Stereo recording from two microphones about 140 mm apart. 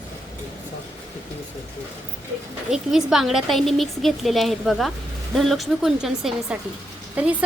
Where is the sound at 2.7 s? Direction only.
5° right (ahead or behind).